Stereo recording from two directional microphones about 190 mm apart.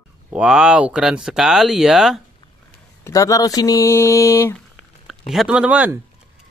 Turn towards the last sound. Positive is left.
turn(degrees=-10)  # may be behind; listen again after turning